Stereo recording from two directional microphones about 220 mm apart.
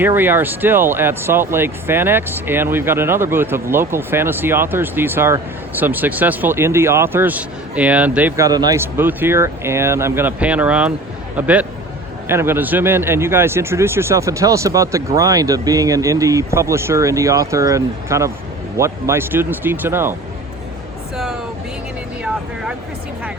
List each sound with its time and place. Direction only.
0.0 s speech: 10° right (ahead or behind)